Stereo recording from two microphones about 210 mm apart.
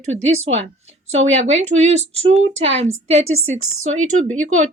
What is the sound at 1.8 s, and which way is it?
A woman's voice, 30° right (ahead or behind).